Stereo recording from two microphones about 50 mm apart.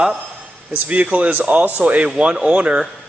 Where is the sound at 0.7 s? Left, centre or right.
Right.